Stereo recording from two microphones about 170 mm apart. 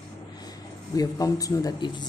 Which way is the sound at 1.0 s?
20° left (ahead or behind).